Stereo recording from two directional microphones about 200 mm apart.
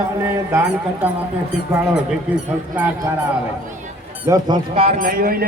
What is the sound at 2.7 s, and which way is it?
Speech, 10° right (ahead or behind).